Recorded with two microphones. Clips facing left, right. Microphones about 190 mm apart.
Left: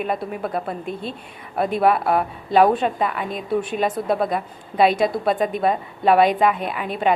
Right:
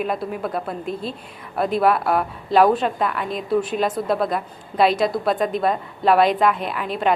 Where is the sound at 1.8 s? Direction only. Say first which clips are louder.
Left 2 dB; centre (ahead or behind).